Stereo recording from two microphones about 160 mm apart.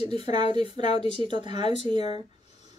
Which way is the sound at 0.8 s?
40° left (ahead or behind).